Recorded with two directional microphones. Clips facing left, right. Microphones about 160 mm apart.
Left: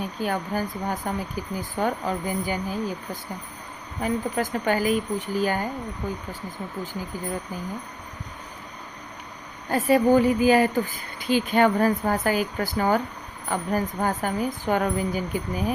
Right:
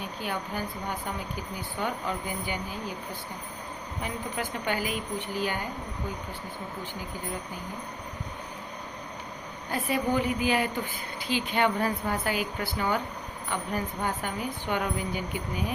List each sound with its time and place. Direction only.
0.2 s speech: 40° left (ahead or behind)
4.0 s a woman's voice: 40° left (ahead or behind)
9.7 s a woman's voice: 40° left (ahead or behind)